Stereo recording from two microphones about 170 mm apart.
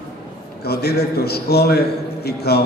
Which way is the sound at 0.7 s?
70° left (ahead or behind).